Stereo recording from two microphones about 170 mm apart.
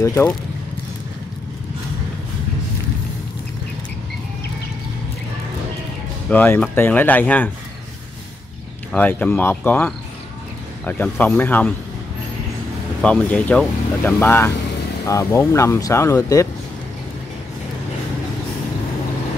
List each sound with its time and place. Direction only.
0.0 s speech: 15° left (ahead or behind)
6.2 s speech: 10° left (ahead or behind)
8.9 s speech: 10° left (ahead or behind)
13.0 s speech: 5° left (ahead or behind)